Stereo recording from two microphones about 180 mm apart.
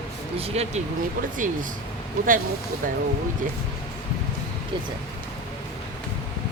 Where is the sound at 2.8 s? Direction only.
50° right (ahead or behind).